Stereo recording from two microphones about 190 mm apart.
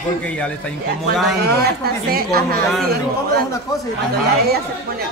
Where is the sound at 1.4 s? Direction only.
55° right (ahead or behind).